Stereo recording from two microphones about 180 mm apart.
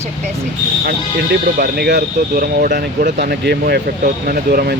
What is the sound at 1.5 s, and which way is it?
Speech, 60° right (ahead or behind).